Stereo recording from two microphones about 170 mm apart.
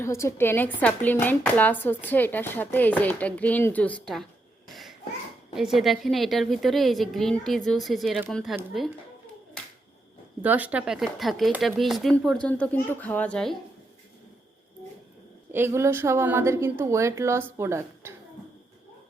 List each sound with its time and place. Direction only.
0.0 s speech: 15° left (ahead or behind)
4.7 s a sound: centre (ahead or behind)
5.5 s speech: centre (ahead or behind)
10.4 s speech: 10° right (ahead or behind)
15.5 s a woman's voice: 15° right (ahead or behind)